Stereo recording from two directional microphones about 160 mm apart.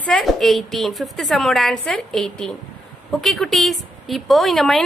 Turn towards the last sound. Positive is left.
turn(degrees=0)  # may be behind; listen again after turning